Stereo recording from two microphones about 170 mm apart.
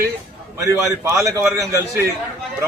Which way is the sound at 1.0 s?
20° right (ahead or behind).